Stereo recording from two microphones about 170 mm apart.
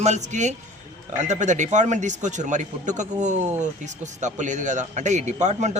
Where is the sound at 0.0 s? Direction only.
45° right (ahead or behind).